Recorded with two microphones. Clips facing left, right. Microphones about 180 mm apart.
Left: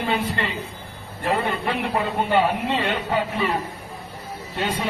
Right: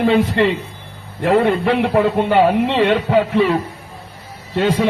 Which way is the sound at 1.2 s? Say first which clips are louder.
Right 9 dB; 65° right (ahead or behind).